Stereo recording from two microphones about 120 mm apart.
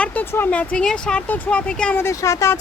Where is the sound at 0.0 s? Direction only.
15° left (ahead or behind).